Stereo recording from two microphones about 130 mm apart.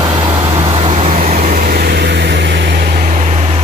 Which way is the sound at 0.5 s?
45° right (ahead or behind).